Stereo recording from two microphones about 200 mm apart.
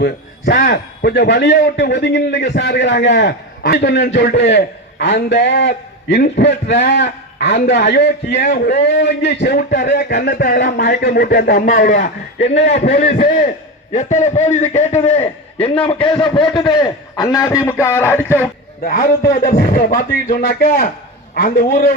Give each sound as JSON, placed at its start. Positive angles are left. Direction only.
{"t": 0.0, "sound": "a man's voice", "side_deg": 60}
{"t": 11.8, "sound": "a man's voice", "side_deg": 65}
{"t": 12.9, "sound": "a man's voice", "side_deg": 30}
{"t": 13.2, "sound": "a man's voice", "side_deg": 45}
{"t": 18.9, "sound": "speech", "side_deg": 45}